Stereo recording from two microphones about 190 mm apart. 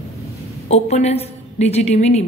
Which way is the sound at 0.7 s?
35° left (ahead or behind).